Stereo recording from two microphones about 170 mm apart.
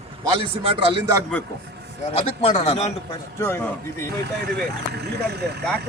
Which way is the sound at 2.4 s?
40° left (ahead or behind).